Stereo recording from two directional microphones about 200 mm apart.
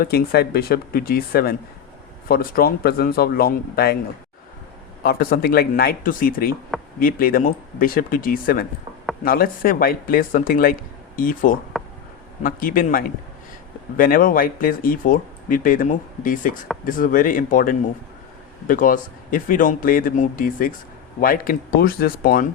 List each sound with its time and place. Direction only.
0.0 s speech: 50° left (ahead or behind)
5.0 s speech: 50° left (ahead or behind)
11.7 s a sound: centre (ahead or behind)
12.4 s speech: 45° left (ahead or behind)